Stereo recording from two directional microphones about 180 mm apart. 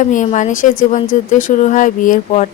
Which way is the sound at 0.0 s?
45° left (ahead or behind).